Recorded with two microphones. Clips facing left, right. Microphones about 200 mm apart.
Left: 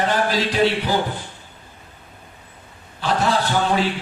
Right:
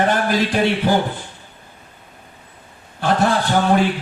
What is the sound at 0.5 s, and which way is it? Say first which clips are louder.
Speech: right 1 dB; 55° right (ahead or behind).